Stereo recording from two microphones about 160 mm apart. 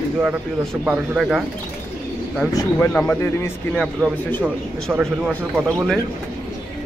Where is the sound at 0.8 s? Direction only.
5° right (ahead or behind).